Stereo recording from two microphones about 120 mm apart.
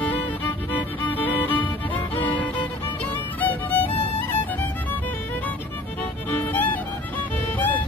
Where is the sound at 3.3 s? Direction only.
15° left (ahead or behind).